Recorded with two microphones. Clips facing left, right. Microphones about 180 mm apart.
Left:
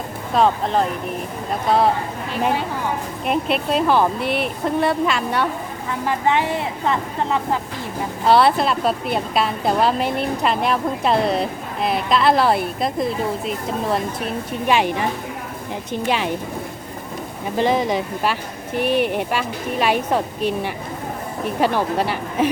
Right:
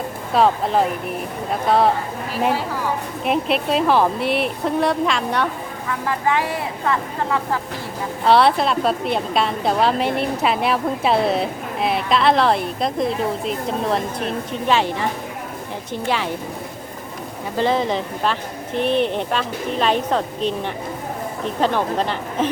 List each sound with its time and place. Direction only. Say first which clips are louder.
0.3 s a woman's voice: right 1 dB; 5° right (ahead or behind)
3.2 s a woman's voice: right 1 dB; centre (ahead or behind)
5.9 s speech: left 1 dB; 25° left (ahead or behind)
8.3 s a woman's voice: even; centre (ahead or behind)
14.7 s speech: left 1 dB; 15° left (ahead or behind)
17.6 s speech: left 1 dB; 15° left (ahead or behind)